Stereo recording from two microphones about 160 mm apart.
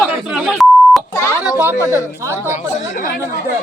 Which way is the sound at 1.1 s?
20° left (ahead or behind).